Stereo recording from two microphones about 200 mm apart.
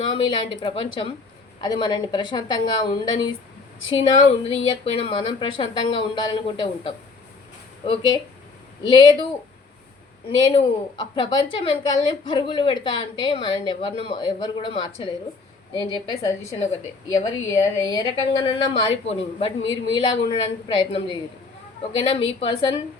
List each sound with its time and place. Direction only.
0.1 s a woman's voice: 25° left (ahead or behind)
10.2 s a woman's voice: 25° left (ahead or behind)